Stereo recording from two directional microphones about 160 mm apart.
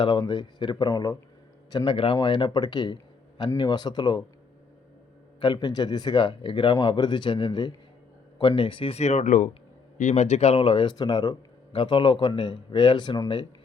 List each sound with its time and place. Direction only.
0.0 s speech: 30° left (ahead or behind)
5.4 s speech: 25° left (ahead or behind)